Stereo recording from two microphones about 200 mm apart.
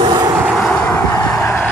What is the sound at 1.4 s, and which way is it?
Vehicle, 10° left (ahead or behind).